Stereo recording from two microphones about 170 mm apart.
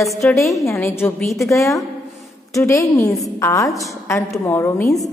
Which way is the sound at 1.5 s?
20° left (ahead or behind).